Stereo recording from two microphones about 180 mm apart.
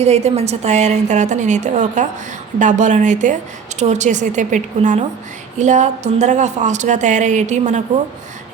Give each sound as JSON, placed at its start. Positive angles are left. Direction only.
{"t": 0.0, "sound": "a woman's voice", "side_deg": -35}